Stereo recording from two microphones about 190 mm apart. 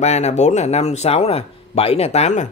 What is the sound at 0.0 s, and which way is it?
Speech, 35° left (ahead or behind).